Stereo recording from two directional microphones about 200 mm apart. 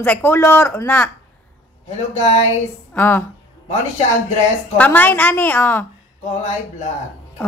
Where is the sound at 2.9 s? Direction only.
10° left (ahead or behind).